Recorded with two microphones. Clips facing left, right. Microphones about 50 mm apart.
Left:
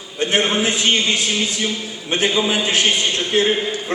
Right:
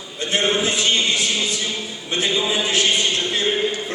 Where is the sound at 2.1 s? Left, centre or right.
Left.